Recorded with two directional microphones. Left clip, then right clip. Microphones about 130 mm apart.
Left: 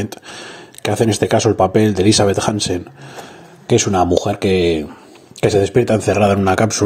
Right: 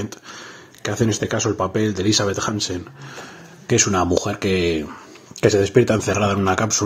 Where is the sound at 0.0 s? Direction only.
35° left (ahead or behind).